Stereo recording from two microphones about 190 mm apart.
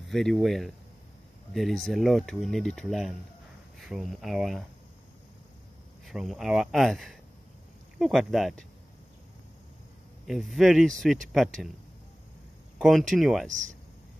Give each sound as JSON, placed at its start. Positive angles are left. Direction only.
{"t": 0.1, "sound": "speech", "side_deg": 0}
{"t": 6.0, "sound": "speech", "side_deg": 0}
{"t": 10.2, "sound": "speech", "side_deg": 0}
{"t": 12.7, "sound": "a sound", "side_deg": 0}
{"t": 13.1, "sound": "speech", "side_deg": 0}
{"t": 13.5, "sound": "speech", "side_deg": -40}